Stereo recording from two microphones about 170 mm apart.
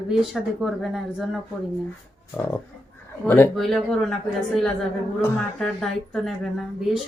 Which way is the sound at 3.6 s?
Centre (ahead or behind).